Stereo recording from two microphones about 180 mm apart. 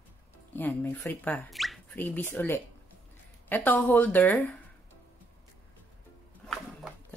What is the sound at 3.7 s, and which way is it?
Speech, 10° left (ahead or behind).